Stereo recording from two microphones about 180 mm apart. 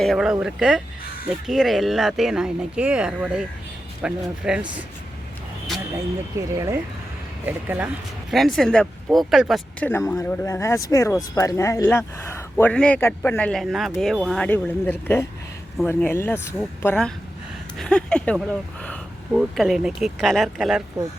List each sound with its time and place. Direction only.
0.0 s speech: centre (ahead or behind)
6.3 s speech: 15° right (ahead or behind)
8.3 s speech: centre (ahead or behind)
9.8 s speech: 10° left (ahead or behind)